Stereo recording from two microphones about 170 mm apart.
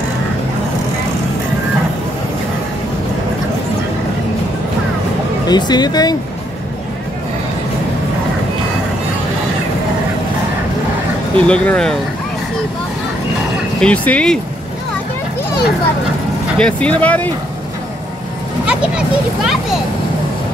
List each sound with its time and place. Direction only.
5.5 s speech: 25° left (ahead or behind)
11.3 s speech: 5° left (ahead or behind)
13.7 s speech: 5° left (ahead or behind)
16.5 s speech: 5° left (ahead or behind)
18.7 s a child's voice: 5° right (ahead or behind)